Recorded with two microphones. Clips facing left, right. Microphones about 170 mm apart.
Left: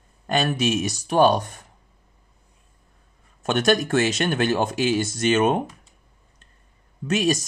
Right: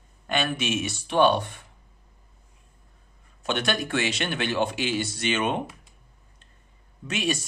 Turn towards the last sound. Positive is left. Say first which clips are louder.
# left 6 dB
turn(degrees=40)  # may be behind; listen again after turning